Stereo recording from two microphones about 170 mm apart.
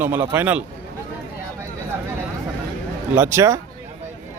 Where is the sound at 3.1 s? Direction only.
15° right (ahead or behind).